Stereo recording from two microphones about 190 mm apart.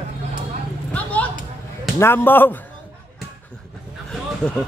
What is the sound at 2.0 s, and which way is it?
Speech, 10° left (ahead or behind).